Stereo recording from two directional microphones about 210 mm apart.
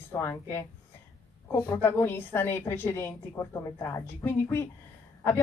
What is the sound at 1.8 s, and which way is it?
A woman's voice, 10° left (ahead or behind).